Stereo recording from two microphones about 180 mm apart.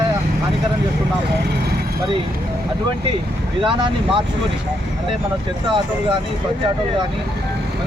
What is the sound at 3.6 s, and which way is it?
Speech, 25° right (ahead or behind).